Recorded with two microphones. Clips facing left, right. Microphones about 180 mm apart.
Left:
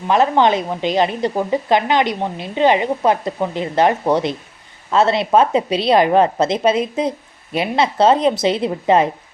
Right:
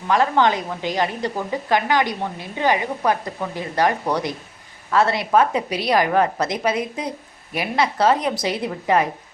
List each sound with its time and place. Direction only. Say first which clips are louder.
0.1 s a woman's voice: left 4 dB; 20° left (ahead or behind)